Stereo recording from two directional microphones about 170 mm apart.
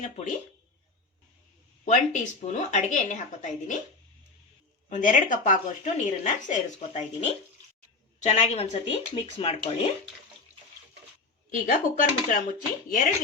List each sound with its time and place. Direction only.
1.8 s speech: 45° left (ahead or behind)
4.9 s speech: 50° left (ahead or behind)
11.5 s speech: 50° left (ahead or behind)